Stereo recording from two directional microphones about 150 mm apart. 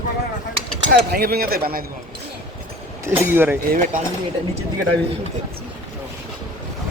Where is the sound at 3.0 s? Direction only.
15° right (ahead or behind).